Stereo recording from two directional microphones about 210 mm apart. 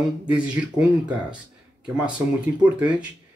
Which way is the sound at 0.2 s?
5° right (ahead or behind).